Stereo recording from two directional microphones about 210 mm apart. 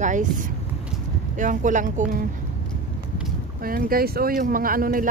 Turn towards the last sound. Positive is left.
turn(degrees=-40)  # may be behind; listen again after turning